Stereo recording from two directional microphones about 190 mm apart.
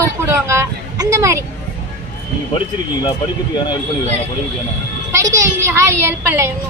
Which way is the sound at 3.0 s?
20° left (ahead or behind).